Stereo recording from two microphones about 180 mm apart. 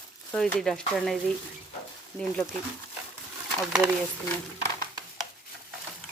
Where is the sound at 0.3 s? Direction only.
5° left (ahead or behind).